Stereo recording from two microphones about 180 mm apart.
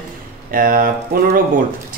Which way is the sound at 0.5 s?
50° right (ahead or behind).